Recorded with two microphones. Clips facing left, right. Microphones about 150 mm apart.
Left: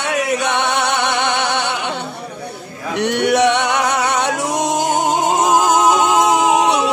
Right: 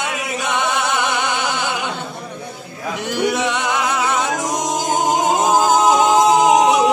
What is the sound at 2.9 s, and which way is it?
Music, 70° left (ahead or behind).